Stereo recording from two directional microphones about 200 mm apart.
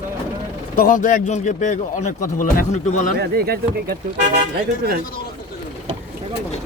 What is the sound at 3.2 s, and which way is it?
Speech, 50° right (ahead or behind).